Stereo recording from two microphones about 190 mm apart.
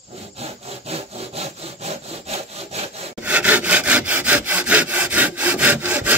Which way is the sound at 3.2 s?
10° right (ahead or behind).